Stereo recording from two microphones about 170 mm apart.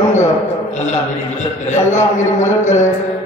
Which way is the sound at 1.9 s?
45° left (ahead or behind).